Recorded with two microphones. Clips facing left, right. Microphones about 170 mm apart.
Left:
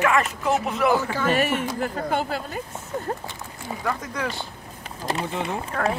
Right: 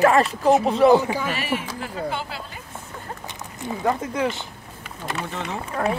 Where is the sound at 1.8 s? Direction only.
45° left (ahead or behind).